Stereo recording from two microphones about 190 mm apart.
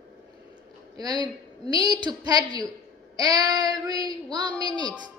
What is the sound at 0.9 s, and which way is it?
A woman's voice, 20° right (ahead or behind).